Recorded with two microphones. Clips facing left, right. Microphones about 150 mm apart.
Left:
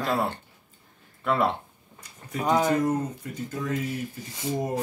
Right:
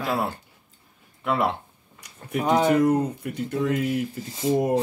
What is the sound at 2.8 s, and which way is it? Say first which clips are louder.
Speech: right 5 dB; 65° right (ahead or behind).